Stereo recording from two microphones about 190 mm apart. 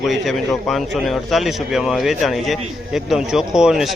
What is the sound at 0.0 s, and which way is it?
Speech, centre (ahead or behind).